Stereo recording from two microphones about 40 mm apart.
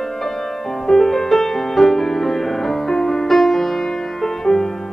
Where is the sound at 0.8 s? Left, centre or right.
Centre.